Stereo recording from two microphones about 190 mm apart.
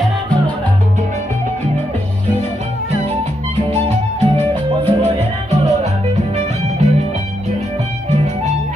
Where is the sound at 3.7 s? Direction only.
15° left (ahead or behind).